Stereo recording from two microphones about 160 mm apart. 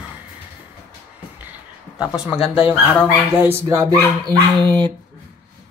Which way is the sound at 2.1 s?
5° right (ahead or behind).